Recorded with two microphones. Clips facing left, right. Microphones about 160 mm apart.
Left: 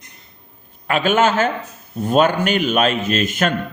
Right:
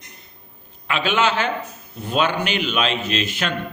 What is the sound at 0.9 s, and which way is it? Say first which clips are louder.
A man's voice: left 4 dB; 45° left (ahead or behind).